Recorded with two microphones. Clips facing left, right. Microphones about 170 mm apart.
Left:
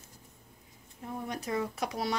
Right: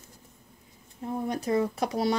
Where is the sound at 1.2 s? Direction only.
35° right (ahead or behind).